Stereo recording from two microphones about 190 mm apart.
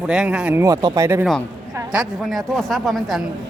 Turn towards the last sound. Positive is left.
turn(degrees=0)  # may be behind; listen again after turning